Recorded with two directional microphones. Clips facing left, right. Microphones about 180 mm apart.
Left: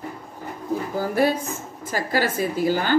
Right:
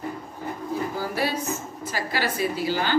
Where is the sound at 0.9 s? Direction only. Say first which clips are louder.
Left 6 dB; 50° left (ahead or behind).